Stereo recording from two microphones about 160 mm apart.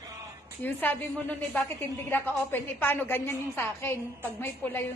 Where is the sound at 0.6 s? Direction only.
10° left (ahead or behind).